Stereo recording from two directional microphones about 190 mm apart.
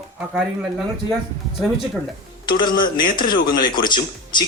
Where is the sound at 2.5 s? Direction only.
25° left (ahead or behind).